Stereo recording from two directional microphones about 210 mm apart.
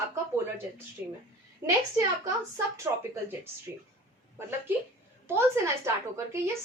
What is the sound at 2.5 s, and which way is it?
Speech, 15° right (ahead or behind).